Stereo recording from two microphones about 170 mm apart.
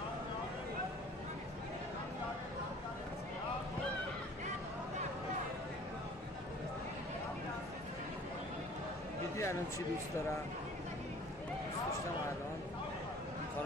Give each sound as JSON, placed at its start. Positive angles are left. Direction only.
{"t": 9.4, "sound": "speech", "side_deg": 15}